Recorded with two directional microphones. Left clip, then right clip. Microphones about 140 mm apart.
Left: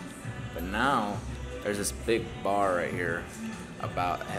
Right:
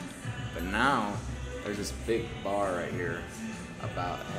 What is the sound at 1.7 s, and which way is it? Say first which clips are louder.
Speech: left 3 dB; 25° left (ahead or behind).